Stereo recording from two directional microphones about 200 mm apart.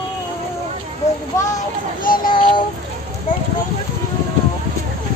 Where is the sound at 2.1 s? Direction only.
45° left (ahead or behind).